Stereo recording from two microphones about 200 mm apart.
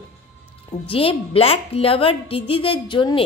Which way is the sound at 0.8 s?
25° left (ahead or behind).